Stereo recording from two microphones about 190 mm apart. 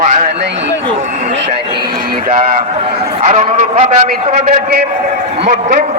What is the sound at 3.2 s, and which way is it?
Speech, 35° right (ahead or behind).